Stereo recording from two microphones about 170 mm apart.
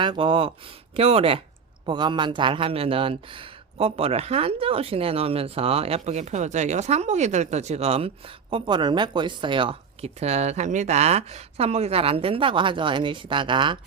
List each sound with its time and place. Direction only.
0.0 s a man's voice: 30° right (ahead or behind)